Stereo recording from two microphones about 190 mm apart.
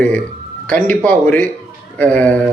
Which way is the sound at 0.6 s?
10° left (ahead or behind).